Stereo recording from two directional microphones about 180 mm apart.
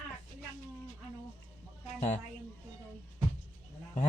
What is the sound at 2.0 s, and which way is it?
Speech, 40° left (ahead or behind).